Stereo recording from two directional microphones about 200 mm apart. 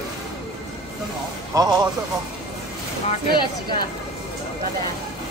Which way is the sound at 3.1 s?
25° left (ahead or behind).